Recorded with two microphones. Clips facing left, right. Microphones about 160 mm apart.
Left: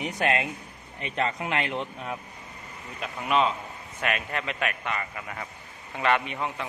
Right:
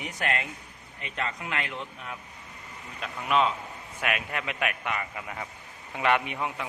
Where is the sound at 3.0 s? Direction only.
Centre (ahead or behind).